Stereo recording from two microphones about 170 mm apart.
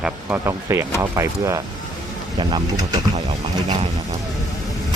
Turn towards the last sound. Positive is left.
turn(degrees=-40)  # may be behind; listen again after turning